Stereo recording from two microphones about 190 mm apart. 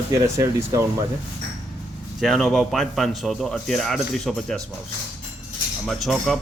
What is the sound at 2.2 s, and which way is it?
Speech, centre (ahead or behind).